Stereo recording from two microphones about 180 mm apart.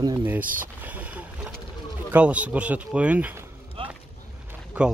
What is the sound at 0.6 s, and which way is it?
Speech, 10° right (ahead or behind).